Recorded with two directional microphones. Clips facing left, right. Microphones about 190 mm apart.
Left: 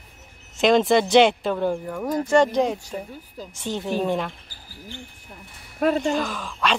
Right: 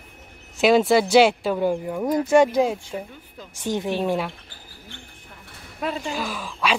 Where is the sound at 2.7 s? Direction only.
40° left (ahead or behind).